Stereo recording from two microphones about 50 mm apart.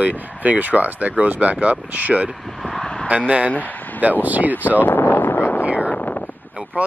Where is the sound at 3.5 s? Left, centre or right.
Left.